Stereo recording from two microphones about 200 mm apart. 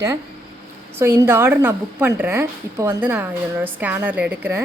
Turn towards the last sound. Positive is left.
turn(degrees=-10)  # may be behind; listen again after turning